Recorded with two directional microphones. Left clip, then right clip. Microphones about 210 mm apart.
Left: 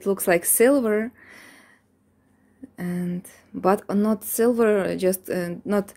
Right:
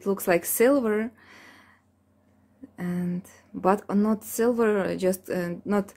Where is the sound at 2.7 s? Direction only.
15° left (ahead or behind).